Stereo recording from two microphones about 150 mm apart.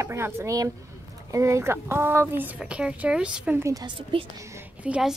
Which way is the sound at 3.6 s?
25° right (ahead or behind).